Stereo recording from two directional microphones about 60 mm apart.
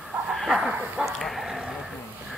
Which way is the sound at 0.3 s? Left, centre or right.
Centre.